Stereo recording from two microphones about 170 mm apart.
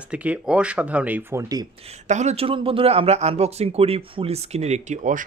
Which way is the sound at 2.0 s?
45° right (ahead or behind).